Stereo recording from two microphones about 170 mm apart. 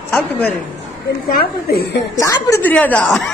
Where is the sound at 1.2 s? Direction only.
65° left (ahead or behind).